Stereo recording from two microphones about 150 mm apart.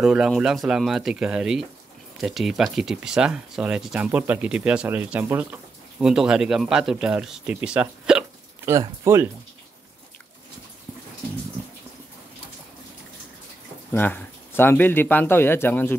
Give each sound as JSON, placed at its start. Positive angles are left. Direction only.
{"t": 0.0, "sound": "speech", "side_deg": -5}
{"t": 13.9, "sound": "speech", "side_deg": 15}